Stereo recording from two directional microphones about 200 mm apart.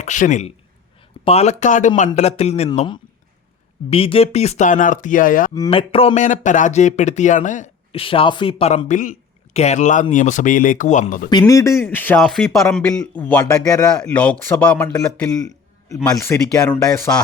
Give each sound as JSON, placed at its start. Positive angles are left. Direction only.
{"t": 0.0, "sound": "a man's voice", "side_deg": 40}
{"t": 3.8, "sound": "a man's voice", "side_deg": 30}
{"t": 5.5, "sound": "a man's voice", "side_deg": 20}
{"t": 11.3, "sound": "speech", "side_deg": 20}
{"t": 13.9, "sound": "speech", "side_deg": 5}
{"t": 14.9, "sound": "a man's voice", "side_deg": 15}